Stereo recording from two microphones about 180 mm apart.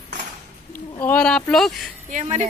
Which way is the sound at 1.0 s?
10° left (ahead or behind).